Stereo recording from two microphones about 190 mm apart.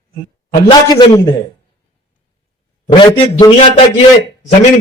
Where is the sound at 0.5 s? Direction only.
20° left (ahead or behind).